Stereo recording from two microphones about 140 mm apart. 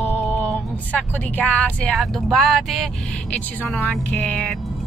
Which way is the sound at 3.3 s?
10° left (ahead or behind).